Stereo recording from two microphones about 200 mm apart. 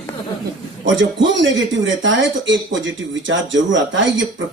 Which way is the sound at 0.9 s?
70° right (ahead or behind).